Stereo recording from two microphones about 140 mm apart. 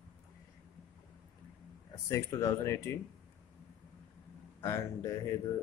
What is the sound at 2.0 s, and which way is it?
Speech, 25° left (ahead or behind).